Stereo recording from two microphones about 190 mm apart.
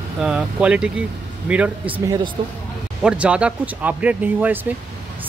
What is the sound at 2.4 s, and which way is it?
Speech, 25° right (ahead or behind).